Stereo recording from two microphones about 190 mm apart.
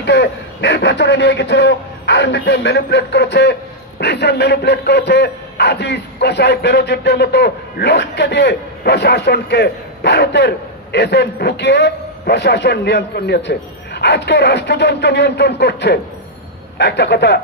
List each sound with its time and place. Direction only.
0.0 s a man's voice: 65° left (ahead or behind)